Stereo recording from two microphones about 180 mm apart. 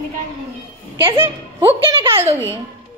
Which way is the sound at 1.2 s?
10° right (ahead or behind).